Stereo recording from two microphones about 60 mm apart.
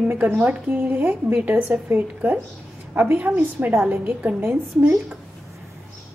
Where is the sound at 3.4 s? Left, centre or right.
Right.